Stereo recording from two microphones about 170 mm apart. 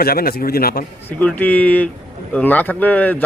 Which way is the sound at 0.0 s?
60° left (ahead or behind).